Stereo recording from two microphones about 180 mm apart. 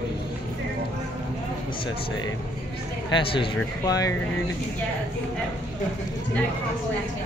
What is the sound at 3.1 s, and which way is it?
Speech, 25° left (ahead or behind).